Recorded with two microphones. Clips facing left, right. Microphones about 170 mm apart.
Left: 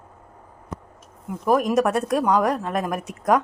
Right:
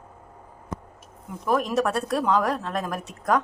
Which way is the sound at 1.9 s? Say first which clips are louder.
Left 4 dB; 20° left (ahead or behind).